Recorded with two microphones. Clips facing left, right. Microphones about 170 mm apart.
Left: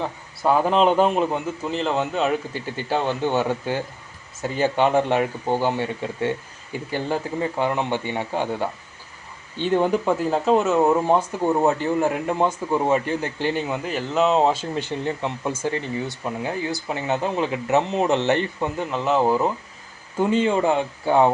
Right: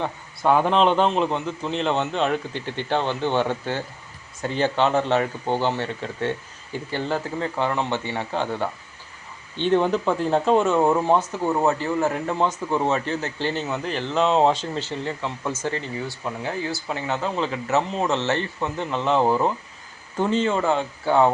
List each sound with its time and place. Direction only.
0.0 s speech: centre (ahead or behind)
18.9 s speech: 5° left (ahead or behind)